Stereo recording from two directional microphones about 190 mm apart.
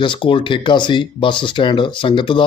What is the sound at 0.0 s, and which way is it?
A man's voice, 25° left (ahead or behind).